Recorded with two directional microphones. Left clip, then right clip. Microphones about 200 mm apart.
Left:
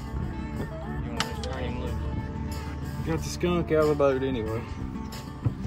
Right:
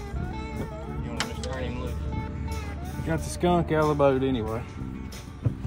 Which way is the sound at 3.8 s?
25° right (ahead or behind).